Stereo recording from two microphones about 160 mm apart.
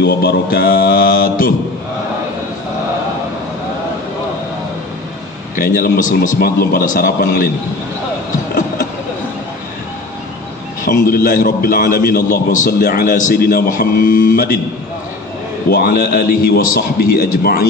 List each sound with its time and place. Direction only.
0.0 s mantra: 85° left; by 1.5 s 65° left (ahead or behind)
5.6 s a man's voice: 60° left (ahead or behind)
10.9 s a man's voice: 60° left (ahead or behind)
15.7 s a man's voice: 70° left (ahead or behind)